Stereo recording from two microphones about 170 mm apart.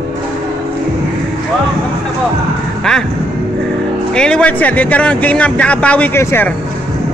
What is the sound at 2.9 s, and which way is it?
Speech, 5° left (ahead or behind).